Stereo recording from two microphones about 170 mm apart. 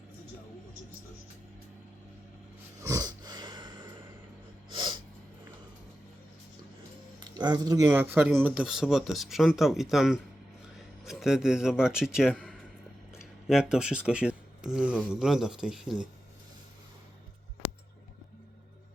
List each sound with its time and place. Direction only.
2.8 s a sound: 20° right (ahead or behind)
4.7 s snort: 25° right (ahead or behind)
7.2 s a man's voice: 25° right (ahead or behind); by 16.0 s centre (ahead or behind)